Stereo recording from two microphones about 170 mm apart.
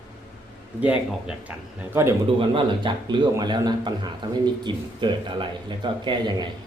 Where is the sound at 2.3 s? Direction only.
30° right (ahead or behind).